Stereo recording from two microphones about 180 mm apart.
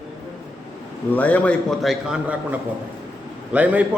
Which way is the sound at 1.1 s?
10° left (ahead or behind).